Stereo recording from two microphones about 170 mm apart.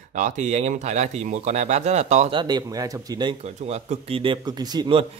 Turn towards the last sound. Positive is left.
turn(degrees=-25)  # may be behind; listen again after turning